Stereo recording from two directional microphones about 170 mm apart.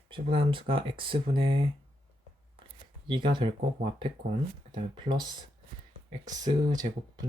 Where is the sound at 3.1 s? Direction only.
25° right (ahead or behind).